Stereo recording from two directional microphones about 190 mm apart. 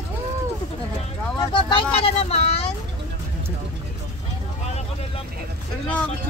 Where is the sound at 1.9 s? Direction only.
30° left (ahead or behind).